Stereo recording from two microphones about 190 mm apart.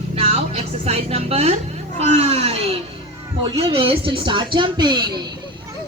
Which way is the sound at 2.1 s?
35° right (ahead or behind).